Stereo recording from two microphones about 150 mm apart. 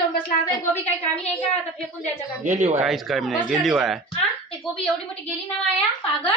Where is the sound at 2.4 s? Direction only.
50° right (ahead or behind).